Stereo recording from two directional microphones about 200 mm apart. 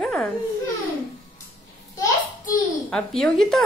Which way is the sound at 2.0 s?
20° left (ahead or behind).